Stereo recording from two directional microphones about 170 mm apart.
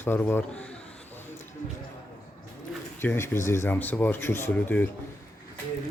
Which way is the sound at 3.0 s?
15° left (ahead or behind).